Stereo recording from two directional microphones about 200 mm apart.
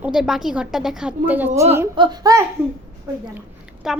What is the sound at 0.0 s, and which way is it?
A woman's voice, 5° right (ahead or behind).